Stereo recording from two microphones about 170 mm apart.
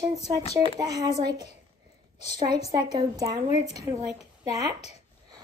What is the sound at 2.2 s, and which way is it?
A child's voice, 25° right (ahead or behind).